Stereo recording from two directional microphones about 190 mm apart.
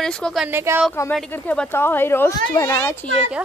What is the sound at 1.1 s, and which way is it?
Speech, 5° left (ahead or behind).